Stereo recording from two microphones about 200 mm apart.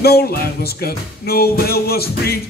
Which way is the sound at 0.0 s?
50° left (ahead or behind).